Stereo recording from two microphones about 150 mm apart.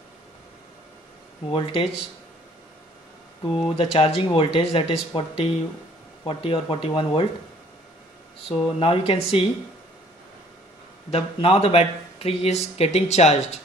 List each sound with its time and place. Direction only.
1.5 s speech: 40° left (ahead or behind)
3.5 s speech: 40° left (ahead or behind)
8.5 s speech: 40° left (ahead or behind)
11.1 s speech: 40° left (ahead or behind)